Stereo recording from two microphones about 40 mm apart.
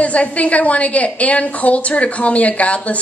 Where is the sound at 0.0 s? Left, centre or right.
Left.